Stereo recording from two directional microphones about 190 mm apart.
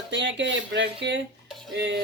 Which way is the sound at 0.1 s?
70° right (ahead or behind).